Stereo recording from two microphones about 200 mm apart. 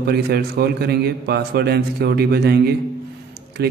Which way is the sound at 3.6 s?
50° right (ahead or behind).